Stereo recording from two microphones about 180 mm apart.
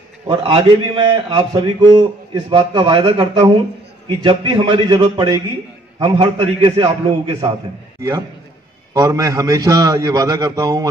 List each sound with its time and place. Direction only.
0.4 s a man's voice: 30° right (ahead or behind)
8.9 s a man's voice: 20° right (ahead or behind)